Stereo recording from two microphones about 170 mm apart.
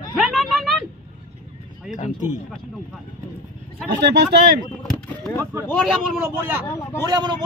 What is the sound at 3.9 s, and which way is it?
Speech, 85° right.